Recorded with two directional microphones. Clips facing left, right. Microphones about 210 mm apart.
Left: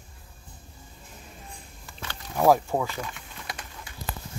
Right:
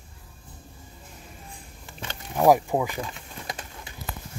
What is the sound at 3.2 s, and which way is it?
Pigeon, 30° right (ahead or behind).